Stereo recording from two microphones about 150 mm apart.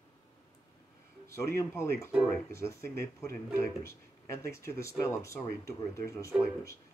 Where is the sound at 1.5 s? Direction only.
15° left (ahead or behind).